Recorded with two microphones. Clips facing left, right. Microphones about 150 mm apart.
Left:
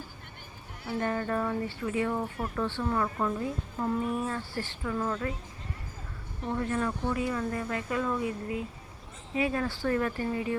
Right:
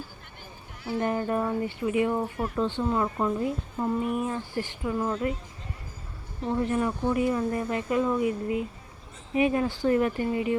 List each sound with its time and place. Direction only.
0.9 s a woman's voice: 15° right (ahead or behind)
6.4 s a woman's voice: 20° right (ahead or behind)